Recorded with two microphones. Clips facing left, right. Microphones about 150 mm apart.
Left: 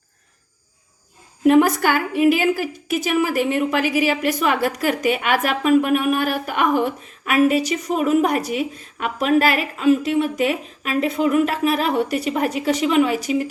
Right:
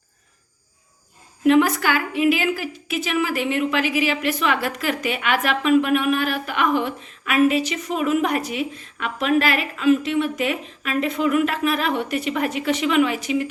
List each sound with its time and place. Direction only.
1.5 s a woman's voice: 45° left (ahead or behind)